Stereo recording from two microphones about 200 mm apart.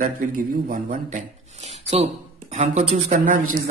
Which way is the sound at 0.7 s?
40° right (ahead or behind).